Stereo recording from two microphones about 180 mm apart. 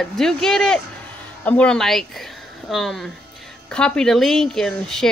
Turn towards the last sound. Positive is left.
turn(degrees=5)  # may be behind; listen again after turning